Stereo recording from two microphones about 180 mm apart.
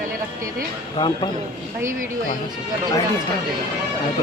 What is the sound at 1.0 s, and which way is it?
Speech, 25° left (ahead or behind).